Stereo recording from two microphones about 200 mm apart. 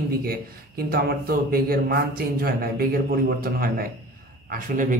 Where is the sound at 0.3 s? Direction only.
50° right (ahead or behind).